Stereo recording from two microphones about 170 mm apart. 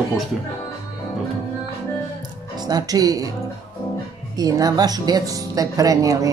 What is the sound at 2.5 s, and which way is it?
Speech, 25° right (ahead or behind).